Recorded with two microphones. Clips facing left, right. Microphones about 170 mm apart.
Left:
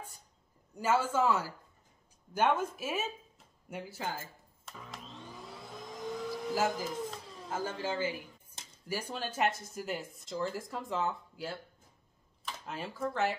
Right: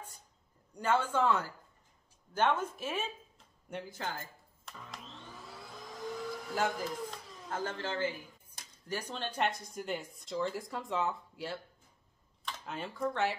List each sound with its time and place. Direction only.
0.7 s speech: 5° left (ahead or behind)
3.7 s music: 5° left (ahead or behind)
5.7 s vehicle: 20° left (ahead or behind)
6.3 s speech: 5° left (ahead or behind)